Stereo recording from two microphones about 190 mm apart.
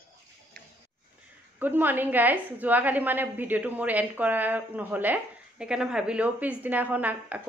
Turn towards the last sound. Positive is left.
turn(degrees=-10)  # may be behind; listen again after turning